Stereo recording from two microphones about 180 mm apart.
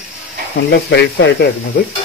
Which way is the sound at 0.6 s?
70° left (ahead or behind).